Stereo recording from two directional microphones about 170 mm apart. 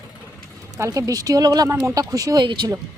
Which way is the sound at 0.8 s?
20° right (ahead or behind).